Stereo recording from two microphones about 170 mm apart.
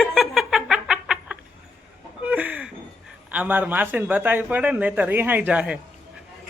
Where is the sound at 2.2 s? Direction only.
10° right (ahead or behind).